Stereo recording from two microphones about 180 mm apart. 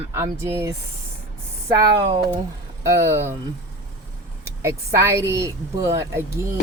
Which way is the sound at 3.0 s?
15° right (ahead or behind).